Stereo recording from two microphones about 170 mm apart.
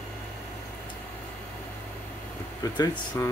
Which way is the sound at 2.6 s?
25° left (ahead or behind).